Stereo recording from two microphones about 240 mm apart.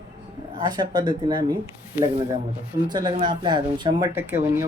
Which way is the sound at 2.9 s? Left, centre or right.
Centre.